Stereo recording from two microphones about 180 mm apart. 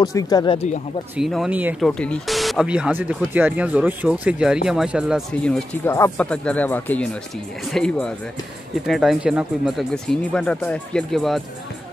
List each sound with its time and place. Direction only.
0.0 s speech: 20° left (ahead or behind)
1.1 s speech: centre (ahead or behind)
1.8 s speech: 5° left (ahead or behind)